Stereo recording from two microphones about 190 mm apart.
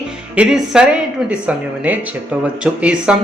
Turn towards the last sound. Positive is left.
turn(degrees=-5)  # may be behind; listen again after turning